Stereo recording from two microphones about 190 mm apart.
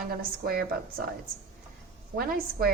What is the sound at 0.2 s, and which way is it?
Speech, 50° right (ahead or behind).